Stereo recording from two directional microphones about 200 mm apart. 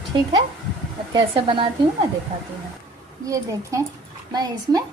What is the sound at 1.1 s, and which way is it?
Speech, 25° right (ahead or behind).